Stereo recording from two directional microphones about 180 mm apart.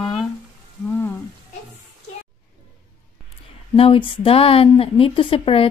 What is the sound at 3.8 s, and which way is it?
Speech, 30° left (ahead or behind).